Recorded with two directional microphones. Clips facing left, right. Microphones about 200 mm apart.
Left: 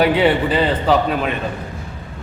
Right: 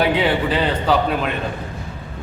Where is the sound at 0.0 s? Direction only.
10° left (ahead or behind).